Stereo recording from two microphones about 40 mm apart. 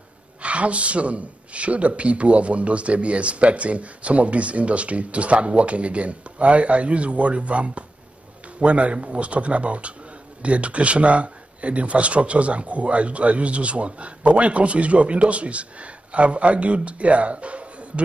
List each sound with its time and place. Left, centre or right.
0.4 s speech: right